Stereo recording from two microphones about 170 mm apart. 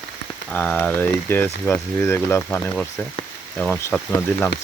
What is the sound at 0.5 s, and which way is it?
Speech, 10° left (ahead or behind).